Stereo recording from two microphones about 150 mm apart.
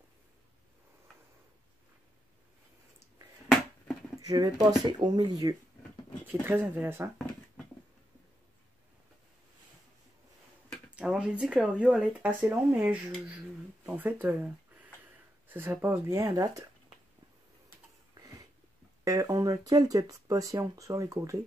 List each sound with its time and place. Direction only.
3.4 s a sound: 5° right (ahead or behind)
4.2 s speech: 25° right (ahead or behind)
6.4 s speech: 15° right (ahead or behind)
10.7 s speech: 5° right (ahead or behind); by 16.6 s 25° right (ahead or behind)
19.0 s speech: 20° right (ahead or behind)